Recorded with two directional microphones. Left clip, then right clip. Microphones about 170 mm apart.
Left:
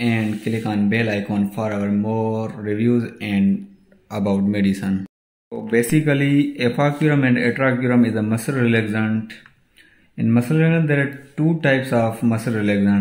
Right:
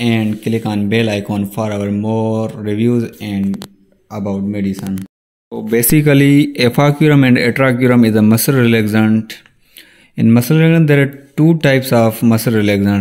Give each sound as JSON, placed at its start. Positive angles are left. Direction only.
{"t": 0.0, "sound": "speech", "side_deg": -55}
{"t": 3.2, "sound": "speech", "side_deg": -25}
{"t": 4.1, "sound": "speech", "side_deg": -10}
{"t": 5.7, "sound": "speech", "side_deg": -65}